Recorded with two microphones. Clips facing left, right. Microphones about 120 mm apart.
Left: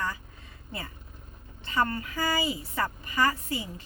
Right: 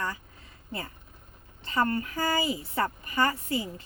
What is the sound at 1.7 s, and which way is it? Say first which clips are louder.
A woman's voice: right 1 dB; 30° right (ahead or behind).